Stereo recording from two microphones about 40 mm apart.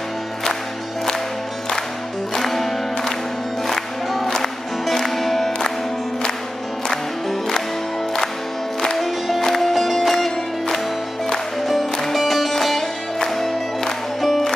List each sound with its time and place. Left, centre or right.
2.3 s music: centre
7.2 s music: centre
8.9 s music: centre